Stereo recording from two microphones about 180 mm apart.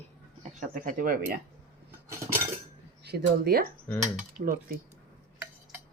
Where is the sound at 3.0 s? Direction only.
60° right (ahead or behind).